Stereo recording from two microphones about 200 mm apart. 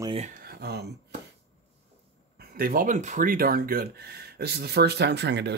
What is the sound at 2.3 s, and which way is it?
Speech, 50° right (ahead or behind).